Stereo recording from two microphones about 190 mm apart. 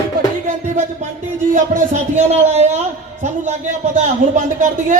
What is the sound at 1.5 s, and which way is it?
A man's voice, 40° right (ahead or behind).